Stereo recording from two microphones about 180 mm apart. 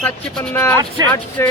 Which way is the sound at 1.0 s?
20° right (ahead or behind).